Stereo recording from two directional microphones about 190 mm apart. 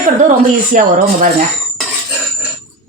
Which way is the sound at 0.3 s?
45° right (ahead or behind).